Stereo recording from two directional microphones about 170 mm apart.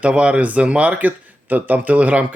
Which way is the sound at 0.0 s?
5° right (ahead or behind).